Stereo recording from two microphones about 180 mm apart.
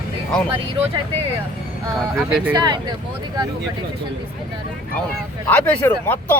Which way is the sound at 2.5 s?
25° right (ahead or behind).